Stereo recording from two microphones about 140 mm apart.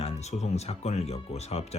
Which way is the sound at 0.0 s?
50° left (ahead or behind).